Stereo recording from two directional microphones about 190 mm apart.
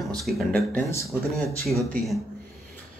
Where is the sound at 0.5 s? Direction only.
10° left (ahead or behind).